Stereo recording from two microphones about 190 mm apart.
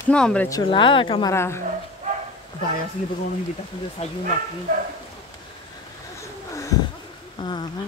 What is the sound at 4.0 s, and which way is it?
Speech, 35° left (ahead or behind).